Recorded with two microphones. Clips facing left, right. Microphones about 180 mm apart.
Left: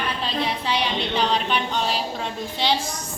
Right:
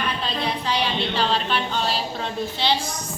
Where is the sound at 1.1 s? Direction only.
15° left (ahead or behind).